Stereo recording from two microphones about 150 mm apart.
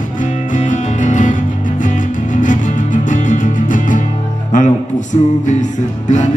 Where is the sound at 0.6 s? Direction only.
55° left (ahead or behind).